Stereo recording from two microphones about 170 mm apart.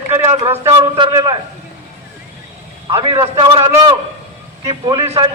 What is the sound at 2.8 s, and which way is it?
A man's voice, 30° right (ahead or behind).